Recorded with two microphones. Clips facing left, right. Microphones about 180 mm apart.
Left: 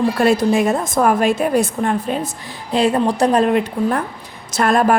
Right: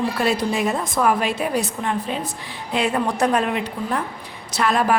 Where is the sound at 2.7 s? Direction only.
35° left (ahead or behind).